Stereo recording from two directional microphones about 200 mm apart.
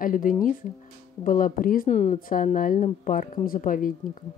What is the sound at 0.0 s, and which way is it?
Speech, 45° left (ahead or behind).